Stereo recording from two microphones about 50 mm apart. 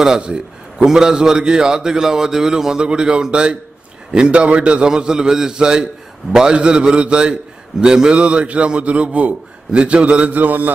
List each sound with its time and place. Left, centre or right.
0.0 s a man's voice: centre; by 10.7 s right